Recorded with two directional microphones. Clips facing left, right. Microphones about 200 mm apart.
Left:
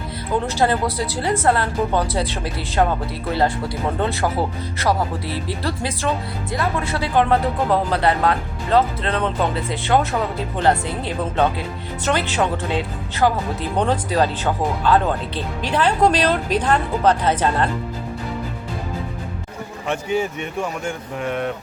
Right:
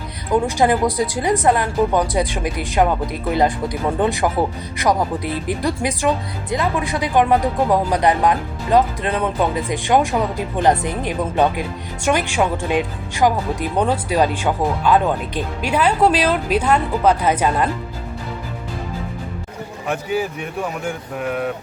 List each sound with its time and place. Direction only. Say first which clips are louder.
0.4 s speech: right 2 dB; 15° right (ahead or behind)
4.0 s speech: right 3 dB; 15° right (ahead or behind)
19.9 s speech: even; 5° right (ahead or behind)